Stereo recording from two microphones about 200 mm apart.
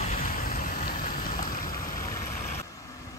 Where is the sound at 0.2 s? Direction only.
45° left (ahead or behind).